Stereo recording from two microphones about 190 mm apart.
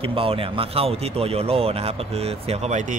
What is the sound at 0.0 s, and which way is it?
A man's voice, 30° right (ahead or behind).